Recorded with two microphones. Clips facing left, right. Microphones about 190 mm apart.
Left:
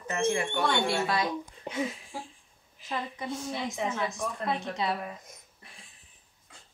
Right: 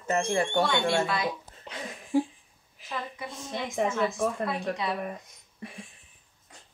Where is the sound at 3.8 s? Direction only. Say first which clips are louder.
Right 8 dB; 50° right (ahead or behind).